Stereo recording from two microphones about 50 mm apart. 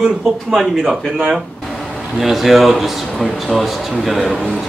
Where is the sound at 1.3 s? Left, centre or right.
Centre.